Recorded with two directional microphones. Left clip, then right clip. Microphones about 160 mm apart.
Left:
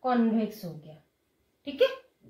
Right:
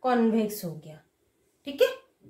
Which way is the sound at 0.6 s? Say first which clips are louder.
Right 4 dB; 65° right (ahead or behind).